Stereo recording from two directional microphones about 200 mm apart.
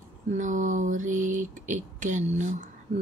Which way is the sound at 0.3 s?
40° right (ahead or behind).